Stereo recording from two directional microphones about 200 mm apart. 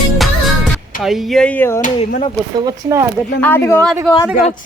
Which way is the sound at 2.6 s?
15° right (ahead or behind).